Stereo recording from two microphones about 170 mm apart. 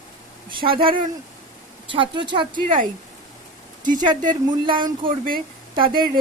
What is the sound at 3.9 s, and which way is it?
Speech, 25° right (ahead or behind).